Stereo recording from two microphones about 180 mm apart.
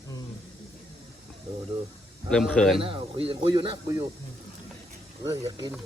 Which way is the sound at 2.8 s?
30° right (ahead or behind).